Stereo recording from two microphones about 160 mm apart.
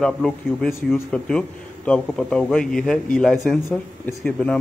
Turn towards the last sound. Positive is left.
turn(degrees=5)  # may be behind; listen again after turning